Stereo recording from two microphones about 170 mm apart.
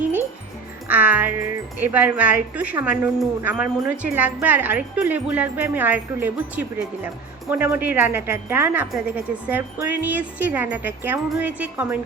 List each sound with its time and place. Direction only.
0.9 s a woman's voice: 10° right (ahead or behind)